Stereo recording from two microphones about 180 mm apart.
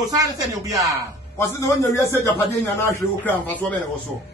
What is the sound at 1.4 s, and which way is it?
A man's voice, 15° left (ahead or behind).